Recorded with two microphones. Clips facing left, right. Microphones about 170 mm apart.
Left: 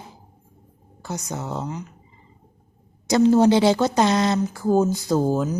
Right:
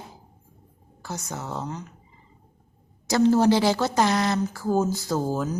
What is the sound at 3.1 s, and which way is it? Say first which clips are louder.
Speech: left 3 dB; 20° left (ahead or behind).